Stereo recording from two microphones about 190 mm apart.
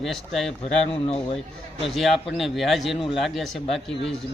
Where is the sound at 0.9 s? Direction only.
30° left (ahead or behind).